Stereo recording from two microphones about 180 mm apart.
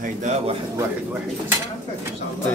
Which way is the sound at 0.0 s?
40° right (ahead or behind).